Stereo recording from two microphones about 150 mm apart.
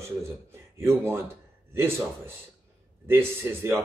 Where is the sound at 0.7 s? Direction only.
15° right (ahead or behind).